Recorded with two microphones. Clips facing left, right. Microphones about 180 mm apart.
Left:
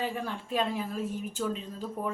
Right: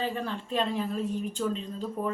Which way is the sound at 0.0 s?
10° left (ahead or behind).